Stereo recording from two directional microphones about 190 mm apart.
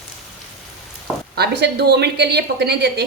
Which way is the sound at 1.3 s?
60° right (ahead or behind).